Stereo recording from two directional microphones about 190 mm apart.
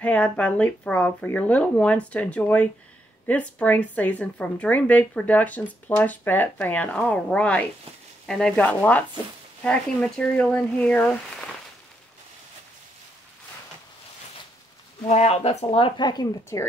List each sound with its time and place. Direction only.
0.0 s speech: 5° left (ahead or behind)
15.0 s speech: 35° left (ahead or behind); by 16.6 s 20° left (ahead or behind)